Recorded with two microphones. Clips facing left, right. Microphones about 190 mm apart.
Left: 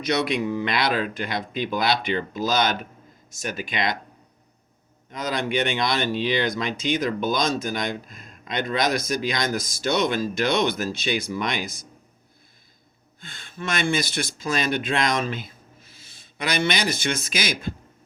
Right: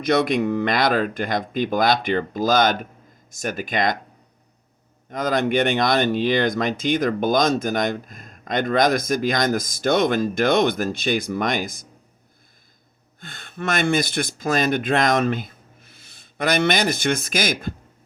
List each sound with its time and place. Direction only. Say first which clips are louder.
0.0 s speech: right 4 dB; 50° right (ahead or behind)
5.1 s speech: right 5 dB; 50° right (ahead or behind)
13.1 s speech: right 4 dB; 55° right (ahead or behind)